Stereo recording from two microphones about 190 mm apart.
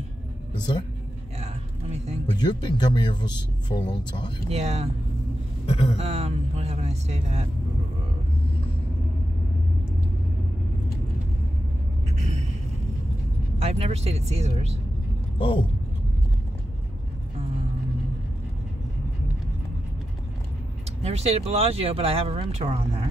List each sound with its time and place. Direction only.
1.4 s a sound: 35° right (ahead or behind)
2.3 s speech: 25° left (ahead or behind)
4.5 s speech: 35° right (ahead or behind)
5.7 s speech: 30° left (ahead or behind)
5.9 s speech: 35° right (ahead or behind)
12.2 s a sound: 35° right (ahead or behind)
13.6 s speech: 35° right (ahead or behind)
15.3 s speech: 30° left (ahead or behind)
21.0 s speech: 35° right (ahead or behind)